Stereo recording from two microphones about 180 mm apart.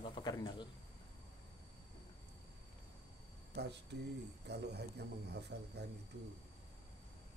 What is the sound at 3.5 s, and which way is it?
Speech, 65° right (ahead or behind).